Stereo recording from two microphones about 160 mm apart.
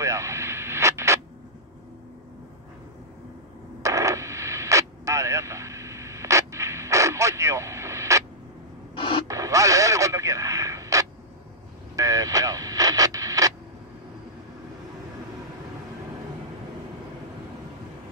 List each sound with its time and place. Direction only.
0.0 s vehicle: 20° right (ahead or behind)
3.8 s radio: 20° right (ahead or behind)
8.9 s a sound: 35° left (ahead or behind)
9.3 s radio: 20° right (ahead or behind)